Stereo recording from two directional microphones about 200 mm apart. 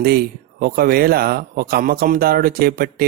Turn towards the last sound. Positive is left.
turn(degrees=-50)  # may be behind; listen again after turning